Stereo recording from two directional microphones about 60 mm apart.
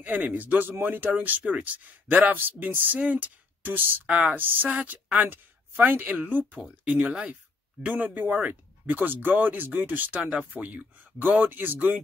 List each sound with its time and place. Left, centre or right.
0.0 s speech: right